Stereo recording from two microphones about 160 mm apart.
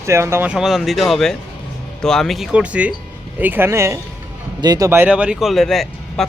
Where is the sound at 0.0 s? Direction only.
15° right (ahead or behind).